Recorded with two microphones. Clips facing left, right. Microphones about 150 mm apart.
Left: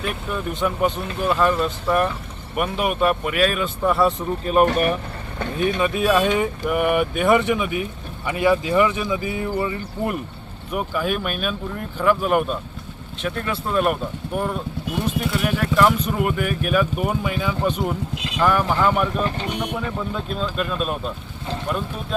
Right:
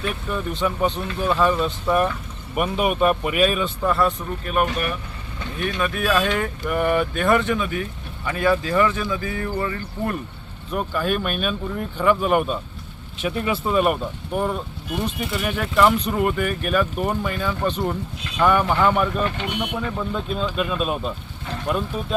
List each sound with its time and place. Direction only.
0.0 s speech: 5° left (ahead or behind)
4.0 s speech: 30° left (ahead or behind)
4.6 s speech: 45° left (ahead or behind)
5.5 s speech: 20° left (ahead or behind); by 12.5 s centre (ahead or behind)
13.2 s speech: 10° right (ahead or behind)
19.2 s speech: 35° left (ahead or behind)
19.7 s speech: centre (ahead or behind)